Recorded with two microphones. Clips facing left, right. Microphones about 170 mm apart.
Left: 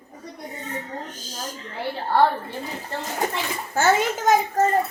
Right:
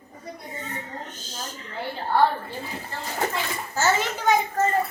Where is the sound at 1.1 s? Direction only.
10° left (ahead or behind).